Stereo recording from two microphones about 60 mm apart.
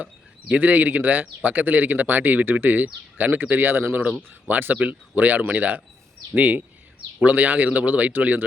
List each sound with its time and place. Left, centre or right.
0.0 s a man's voice: right